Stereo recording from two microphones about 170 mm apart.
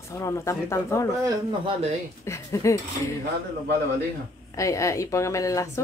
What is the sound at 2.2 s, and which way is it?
Speech, 15° left (ahead or behind).